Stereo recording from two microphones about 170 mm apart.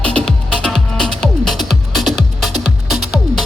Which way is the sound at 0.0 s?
5° left (ahead or behind).